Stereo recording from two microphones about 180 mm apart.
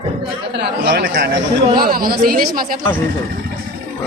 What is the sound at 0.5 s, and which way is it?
Speech, 65° right (ahead or behind).